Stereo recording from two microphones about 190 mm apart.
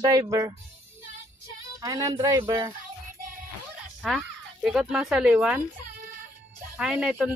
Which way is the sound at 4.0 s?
Centre (ahead or behind).